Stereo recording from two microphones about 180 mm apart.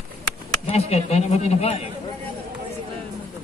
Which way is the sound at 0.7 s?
35° left (ahead or behind).